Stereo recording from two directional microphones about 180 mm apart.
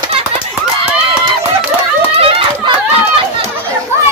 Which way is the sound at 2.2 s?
30° right (ahead or behind).